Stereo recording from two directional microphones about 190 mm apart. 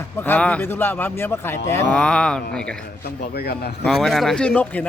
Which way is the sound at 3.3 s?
55° left (ahead or behind).